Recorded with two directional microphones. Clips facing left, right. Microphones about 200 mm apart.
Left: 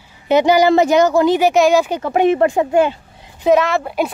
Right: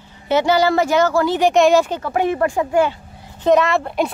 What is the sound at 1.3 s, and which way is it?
Speech, 5° left (ahead or behind).